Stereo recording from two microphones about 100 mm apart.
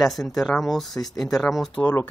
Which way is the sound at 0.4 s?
Centre (ahead or behind).